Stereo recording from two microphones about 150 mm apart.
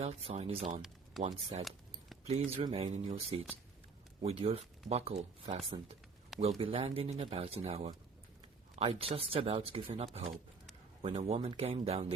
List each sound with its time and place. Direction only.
0.0 s speech: 40° right (ahead or behind)
10.2 s a sound: centre (ahead or behind)
11.1 s speech: 40° right (ahead or behind)